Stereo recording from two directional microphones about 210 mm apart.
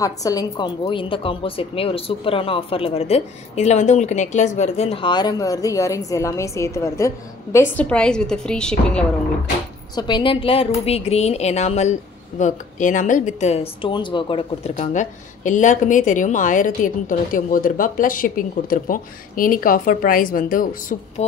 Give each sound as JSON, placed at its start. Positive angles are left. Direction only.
{"t": 0.0, "sound": "a woman's voice", "side_deg": 15}
{"t": 9.9, "sound": "a woman's voice", "side_deg": 20}